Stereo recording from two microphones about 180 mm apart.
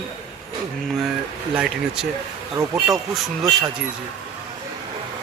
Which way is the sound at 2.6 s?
15° right (ahead or behind).